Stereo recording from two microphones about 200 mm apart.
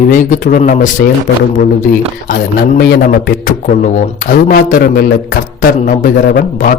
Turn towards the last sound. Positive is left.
turn(degrees=45)  # may be behind; listen again after turning